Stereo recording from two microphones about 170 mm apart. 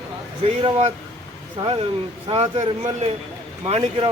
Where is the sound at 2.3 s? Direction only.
40° right (ahead or behind).